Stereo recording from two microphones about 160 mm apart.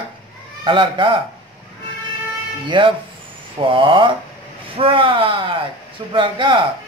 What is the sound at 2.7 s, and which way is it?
Speech, 30° right (ahead or behind).